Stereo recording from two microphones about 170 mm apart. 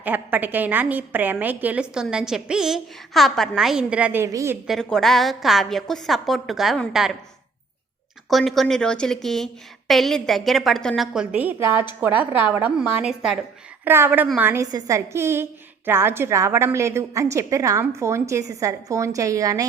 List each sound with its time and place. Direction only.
0.0 s a woman's voice: 10° right (ahead or behind)
4.6 s a woman's voice: centre (ahead or behind)
8.3 s a woman's voice: centre (ahead or behind); by 19.6 s 20° right (ahead or behind)